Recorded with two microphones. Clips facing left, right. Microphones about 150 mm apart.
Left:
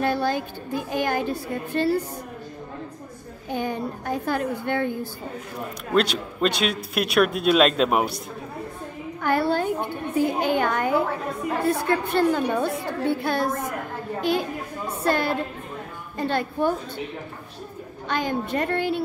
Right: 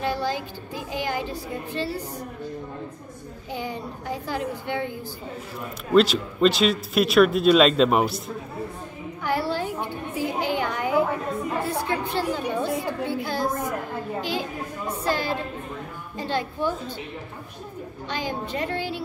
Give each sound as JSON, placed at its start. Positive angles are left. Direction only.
{"t": 0.0, "sound": "speech", "side_deg": 55}
{"t": 3.5, "sound": "speech", "side_deg": 55}
{"t": 5.9, "sound": "speech", "side_deg": 0}
{"t": 9.2, "sound": "a sound", "side_deg": 55}
{"t": 11.6, "sound": "speech", "side_deg": 60}
{"t": 15.0, "sound": "speech", "side_deg": 55}
{"t": 18.0, "sound": "speech", "side_deg": 55}